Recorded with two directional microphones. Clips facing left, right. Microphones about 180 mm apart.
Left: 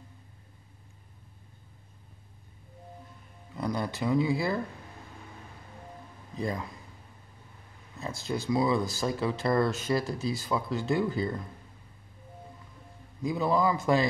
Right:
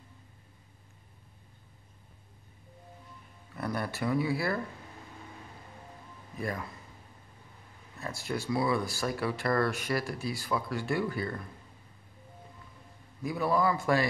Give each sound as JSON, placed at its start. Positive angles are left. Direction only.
{"t": 3.5, "sound": "speech", "side_deg": 20}
{"t": 6.3, "sound": "speech", "side_deg": 20}
{"t": 8.0, "sound": "speech", "side_deg": 20}
{"t": 13.2, "sound": "speech", "side_deg": 20}